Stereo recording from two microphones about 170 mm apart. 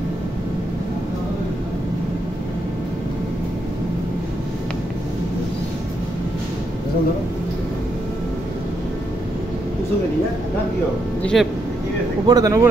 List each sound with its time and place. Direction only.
11.3 s speech: centre (ahead or behind)
12.3 s speech: 20° right (ahead or behind)